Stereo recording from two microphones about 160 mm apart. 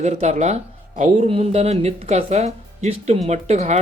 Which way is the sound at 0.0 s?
45° right (ahead or behind).